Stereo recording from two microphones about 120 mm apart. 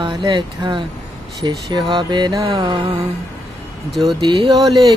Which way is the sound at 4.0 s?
40° right (ahead or behind).